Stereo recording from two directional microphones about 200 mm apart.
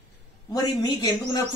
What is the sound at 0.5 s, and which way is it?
Speech, 20° left (ahead or behind).